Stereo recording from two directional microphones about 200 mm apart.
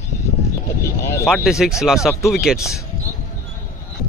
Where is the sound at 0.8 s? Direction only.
15° left (ahead or behind).